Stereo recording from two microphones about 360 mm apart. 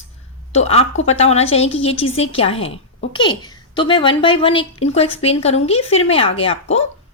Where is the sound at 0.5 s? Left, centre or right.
Centre.